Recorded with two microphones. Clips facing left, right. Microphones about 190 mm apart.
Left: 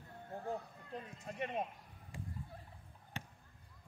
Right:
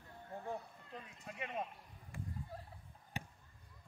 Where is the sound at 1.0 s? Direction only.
45° left (ahead or behind).